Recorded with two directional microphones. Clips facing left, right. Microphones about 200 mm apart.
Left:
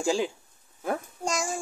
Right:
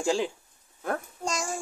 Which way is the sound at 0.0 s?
Centre (ahead or behind).